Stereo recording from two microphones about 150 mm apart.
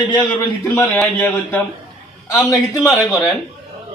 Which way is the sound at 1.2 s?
15° left (ahead or behind).